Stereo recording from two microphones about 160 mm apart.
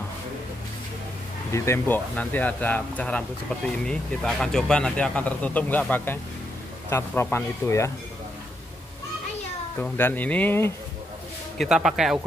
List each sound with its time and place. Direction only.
1.5 s speech: 15° left (ahead or behind)
9.8 s speech: 10° left (ahead or behind)
11.5 s speech: centre (ahead or behind)